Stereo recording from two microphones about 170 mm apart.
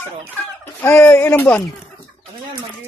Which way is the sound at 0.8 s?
10° left (ahead or behind).